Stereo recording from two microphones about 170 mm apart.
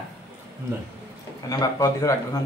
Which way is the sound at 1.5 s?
20° left (ahead or behind).